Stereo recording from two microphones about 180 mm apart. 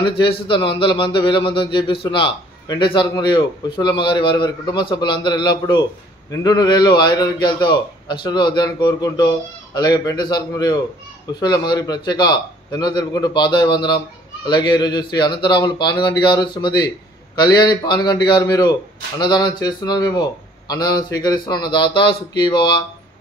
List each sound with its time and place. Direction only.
0.2 s speech: 25° left (ahead or behind)